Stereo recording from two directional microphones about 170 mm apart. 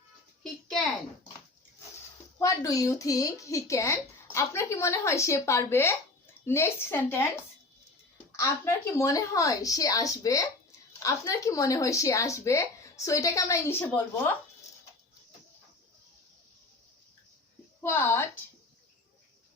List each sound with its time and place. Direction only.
2.4 s a woman's voice: 20° left (ahead or behind)
8.4 s speech: 15° left (ahead or behind)
17.7 s a woman's voice: 15° left (ahead or behind)